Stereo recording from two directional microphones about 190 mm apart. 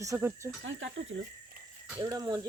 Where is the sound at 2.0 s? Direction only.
20° right (ahead or behind).